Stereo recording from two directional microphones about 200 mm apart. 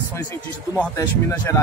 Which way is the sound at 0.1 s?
10° left (ahead or behind).